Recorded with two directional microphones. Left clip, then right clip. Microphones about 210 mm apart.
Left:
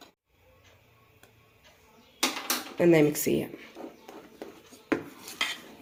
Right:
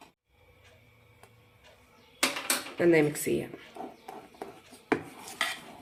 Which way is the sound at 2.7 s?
20° left (ahead or behind).